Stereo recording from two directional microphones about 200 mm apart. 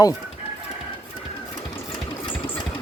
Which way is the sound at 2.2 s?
25° left (ahead or behind).